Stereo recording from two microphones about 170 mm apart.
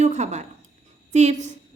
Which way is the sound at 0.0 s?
45° right (ahead or behind).